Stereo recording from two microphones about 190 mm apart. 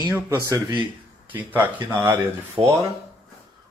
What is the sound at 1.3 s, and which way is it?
Speech, 10° right (ahead or behind).